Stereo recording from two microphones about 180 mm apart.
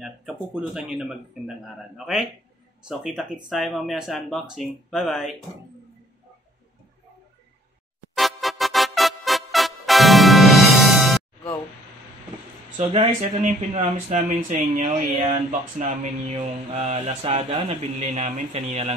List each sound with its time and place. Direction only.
0.0 s speech: centre (ahead or behind)
2.9 s speech: 5° right (ahead or behind)
8.1 s music: centre (ahead or behind)
12.9 s mantra: 40° right (ahead or behind)